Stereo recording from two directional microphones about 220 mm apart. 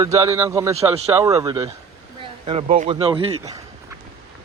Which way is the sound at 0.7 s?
30° right (ahead or behind).